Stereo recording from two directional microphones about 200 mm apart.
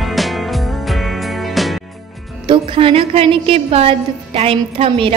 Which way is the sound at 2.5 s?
25° right (ahead or behind).